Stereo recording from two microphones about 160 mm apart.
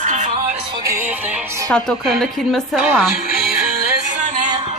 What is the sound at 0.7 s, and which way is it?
Music, 15° right (ahead or behind).